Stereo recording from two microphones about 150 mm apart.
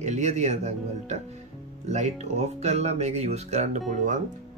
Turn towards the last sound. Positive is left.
turn(degrees=-55)  # may be behind; listen again after turning